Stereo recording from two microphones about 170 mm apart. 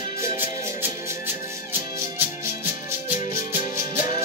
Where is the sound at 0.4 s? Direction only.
15° right (ahead or behind).